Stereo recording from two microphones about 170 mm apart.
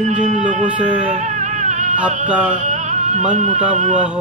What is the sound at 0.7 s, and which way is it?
Music, 5° right (ahead or behind).